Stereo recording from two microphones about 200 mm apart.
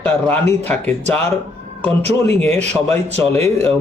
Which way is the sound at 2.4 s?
5° left (ahead or behind).